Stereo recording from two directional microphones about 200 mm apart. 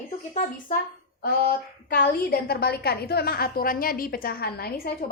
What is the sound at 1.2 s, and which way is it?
A woman's voice, 50° left (ahead or behind).